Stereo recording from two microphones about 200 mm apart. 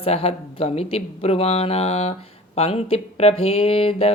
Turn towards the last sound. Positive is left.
turn(degrees=30)  # may be behind; listen again after turning